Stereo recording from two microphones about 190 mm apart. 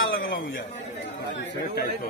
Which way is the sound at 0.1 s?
50° left (ahead or behind).